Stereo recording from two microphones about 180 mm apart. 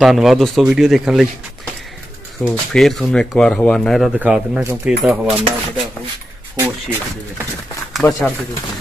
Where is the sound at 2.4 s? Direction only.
5° left (ahead or behind).